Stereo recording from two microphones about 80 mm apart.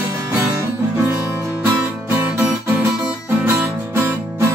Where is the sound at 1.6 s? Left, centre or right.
Right.